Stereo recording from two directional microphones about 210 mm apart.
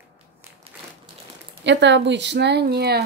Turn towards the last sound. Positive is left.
turn(degrees=-50)  # may be behind; listen again after turning